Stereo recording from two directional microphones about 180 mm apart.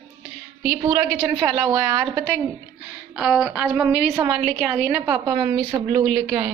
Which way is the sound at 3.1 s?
Centre (ahead or behind).